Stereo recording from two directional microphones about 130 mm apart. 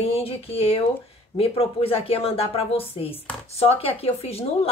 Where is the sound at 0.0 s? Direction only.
50° left (ahead or behind).